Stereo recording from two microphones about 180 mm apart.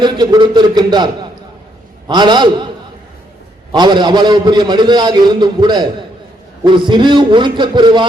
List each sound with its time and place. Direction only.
0.0 s a man's voice: 25° right (ahead or behind)
3.7 s a man's voice: 25° right (ahead or behind)